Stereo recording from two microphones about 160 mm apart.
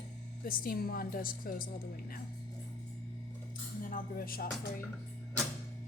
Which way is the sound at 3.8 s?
60° left (ahead or behind).